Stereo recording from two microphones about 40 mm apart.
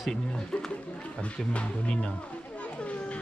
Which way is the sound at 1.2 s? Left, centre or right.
Left.